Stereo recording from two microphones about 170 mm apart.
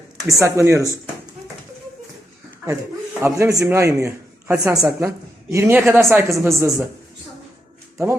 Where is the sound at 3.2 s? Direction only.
15° right (ahead or behind).